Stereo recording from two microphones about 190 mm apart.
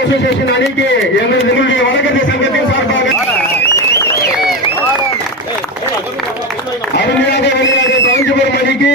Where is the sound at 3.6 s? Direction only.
15° left (ahead or behind).